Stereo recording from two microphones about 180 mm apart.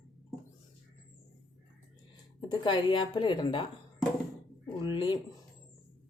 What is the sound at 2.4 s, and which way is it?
Speech, 25° left (ahead or behind).